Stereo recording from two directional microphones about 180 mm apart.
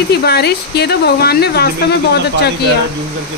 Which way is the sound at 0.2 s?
65° left (ahead or behind).